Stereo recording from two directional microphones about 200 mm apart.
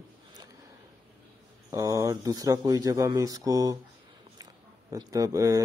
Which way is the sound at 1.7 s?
15° right (ahead or behind).